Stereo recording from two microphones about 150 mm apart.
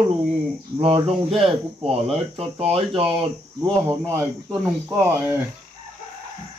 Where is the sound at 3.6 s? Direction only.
15° right (ahead or behind).